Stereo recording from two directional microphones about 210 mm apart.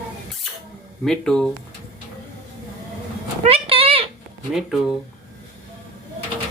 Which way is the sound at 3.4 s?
25° right (ahead or behind).